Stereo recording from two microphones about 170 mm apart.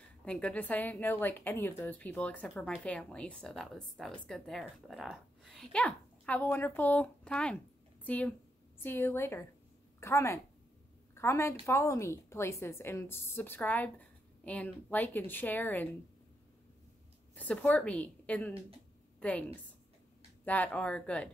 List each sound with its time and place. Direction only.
0.2 s a woman's voice: 5° left (ahead or behind)
17.4 s a woman's voice: 10° left (ahead or behind)